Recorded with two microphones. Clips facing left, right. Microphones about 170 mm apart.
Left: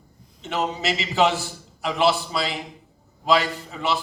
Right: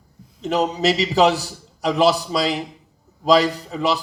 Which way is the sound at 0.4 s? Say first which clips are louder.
Right 6 dB; 40° right (ahead or behind).